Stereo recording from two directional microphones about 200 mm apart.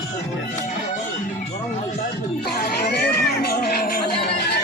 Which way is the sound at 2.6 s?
55° left (ahead or behind).